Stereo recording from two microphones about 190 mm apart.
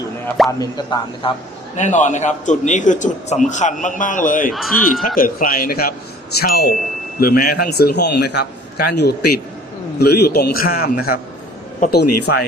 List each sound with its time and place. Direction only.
0.6 s speech: 20° left (ahead or behind)
1.7 s a man's voice: 40° left (ahead or behind)
4.5 s speech: centre (ahead or behind)
5.0 s a man's voice: 45° left (ahead or behind)